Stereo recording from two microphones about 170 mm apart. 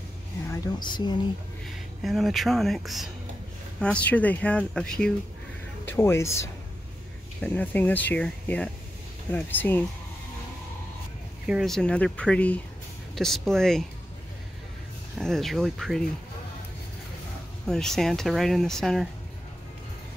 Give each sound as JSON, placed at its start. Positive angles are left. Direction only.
{"t": 0.5, "sound": "speech", "side_deg": 25}
{"t": 1.7, "sound": "speech", "side_deg": 0}
{"t": 5.9, "sound": "speech", "side_deg": 15}
{"t": 11.4, "sound": "speech", "side_deg": 0}
{"t": 15.1, "sound": "speech", "side_deg": 0}
{"t": 17.6, "sound": "speech", "side_deg": 5}